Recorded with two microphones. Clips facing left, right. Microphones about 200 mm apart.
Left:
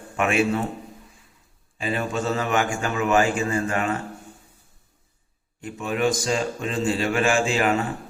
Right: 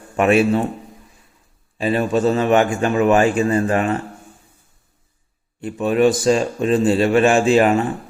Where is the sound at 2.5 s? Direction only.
35° right (ahead or behind).